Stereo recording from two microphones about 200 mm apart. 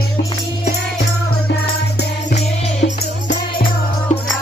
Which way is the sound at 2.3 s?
35° left (ahead or behind).